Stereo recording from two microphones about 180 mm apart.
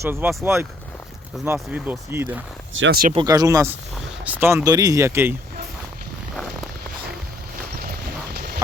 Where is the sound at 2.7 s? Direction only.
90° right.